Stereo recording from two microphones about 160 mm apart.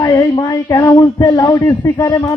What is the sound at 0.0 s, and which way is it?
A man's voice, 20° left (ahead or behind).